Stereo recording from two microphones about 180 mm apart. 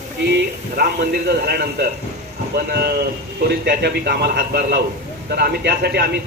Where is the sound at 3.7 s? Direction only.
60° right (ahead or behind).